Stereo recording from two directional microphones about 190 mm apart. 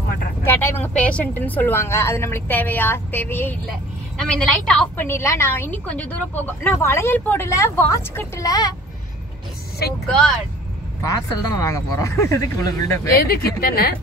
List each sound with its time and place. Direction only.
0.5 s a woman's voice: 10° left (ahead or behind)
10.0 s speech: 5° left (ahead or behind)
11.0 s a woman's voice: 15° left (ahead or behind)
13.1 s a woman's voice: 50° left (ahead or behind)